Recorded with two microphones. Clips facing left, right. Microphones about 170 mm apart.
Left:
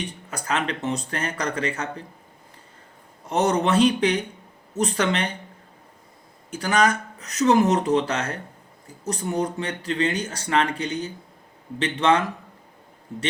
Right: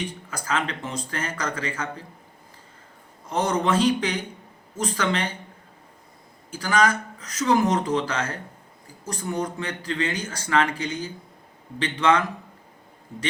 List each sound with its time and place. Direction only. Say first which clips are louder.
0.3 s speech: left 2 dB; 20° left (ahead or behind)
3.2 s speech: left 2 dB; 20° left (ahead or behind)
6.6 s speech: left 1 dB; 20° left (ahead or behind)